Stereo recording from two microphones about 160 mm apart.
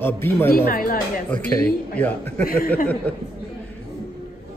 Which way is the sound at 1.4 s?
10° left (ahead or behind).